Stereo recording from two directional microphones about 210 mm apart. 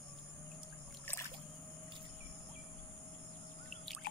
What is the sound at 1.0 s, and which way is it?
Trickle, 10° left (ahead or behind).